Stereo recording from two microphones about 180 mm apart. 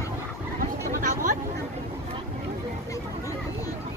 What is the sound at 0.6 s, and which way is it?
Vehicle, 50° right (ahead or behind).